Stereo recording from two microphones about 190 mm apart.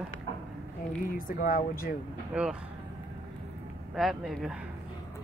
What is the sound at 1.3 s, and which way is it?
Speech, 50° left (ahead or behind).